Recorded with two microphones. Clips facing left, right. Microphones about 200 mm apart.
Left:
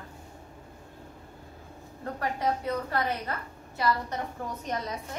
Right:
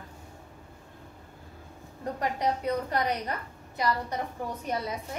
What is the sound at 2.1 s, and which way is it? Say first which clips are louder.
A woman's voice: even; 20° right (ahead or behind).